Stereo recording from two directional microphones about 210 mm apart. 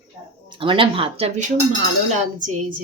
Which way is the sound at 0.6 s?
25° right (ahead or behind).